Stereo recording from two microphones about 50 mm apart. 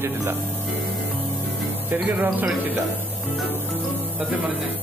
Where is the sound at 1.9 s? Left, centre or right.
Right.